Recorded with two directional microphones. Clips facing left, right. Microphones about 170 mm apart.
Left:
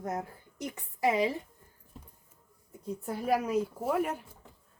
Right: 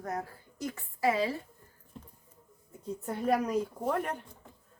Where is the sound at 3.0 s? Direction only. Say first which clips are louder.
Right 1 dB; 5° left (ahead or behind).